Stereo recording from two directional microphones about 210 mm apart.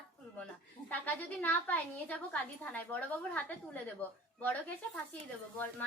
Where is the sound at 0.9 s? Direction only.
10° left (ahead or behind).